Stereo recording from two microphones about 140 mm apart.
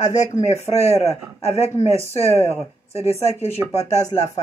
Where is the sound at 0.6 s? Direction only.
50° left (ahead or behind).